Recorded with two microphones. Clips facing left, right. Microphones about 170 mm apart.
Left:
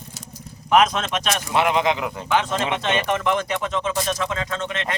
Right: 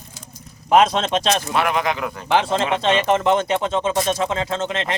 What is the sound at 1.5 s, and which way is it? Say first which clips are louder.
Speech: left 1 dB; 20° left (ahead or behind).